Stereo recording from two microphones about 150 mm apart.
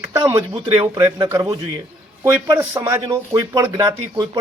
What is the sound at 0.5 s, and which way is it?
Speech, 35° right (ahead or behind).